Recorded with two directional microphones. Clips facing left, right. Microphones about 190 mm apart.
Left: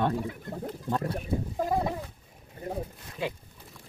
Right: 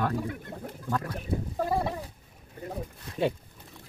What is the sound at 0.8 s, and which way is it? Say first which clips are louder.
Speech: left 1 dB; 25° left (ahead or behind).